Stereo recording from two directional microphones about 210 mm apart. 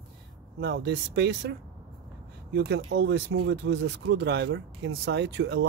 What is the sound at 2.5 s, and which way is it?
Speech, 55° right (ahead or behind).